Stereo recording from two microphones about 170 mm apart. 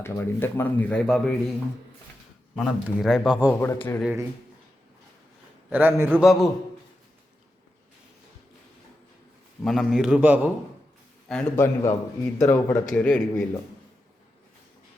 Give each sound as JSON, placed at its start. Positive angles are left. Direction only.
{"t": 0.0, "sound": "speech", "side_deg": 15}
{"t": 2.6, "sound": "a man's voice", "side_deg": 0}
{"t": 5.7, "sound": "a man's voice", "side_deg": -10}
{"t": 9.6, "sound": "speech", "side_deg": 0}
{"t": 11.3, "sound": "speech", "side_deg": 5}